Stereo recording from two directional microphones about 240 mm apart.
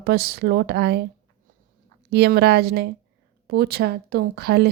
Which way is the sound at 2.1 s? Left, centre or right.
Right.